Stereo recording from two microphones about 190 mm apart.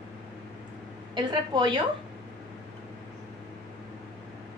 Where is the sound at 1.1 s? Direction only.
25° right (ahead or behind).